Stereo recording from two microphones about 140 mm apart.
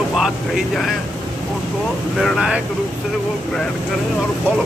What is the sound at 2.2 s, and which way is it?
Speech, centre (ahead or behind).